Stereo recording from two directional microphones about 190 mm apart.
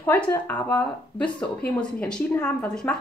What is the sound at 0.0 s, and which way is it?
Speech, 10° left (ahead or behind).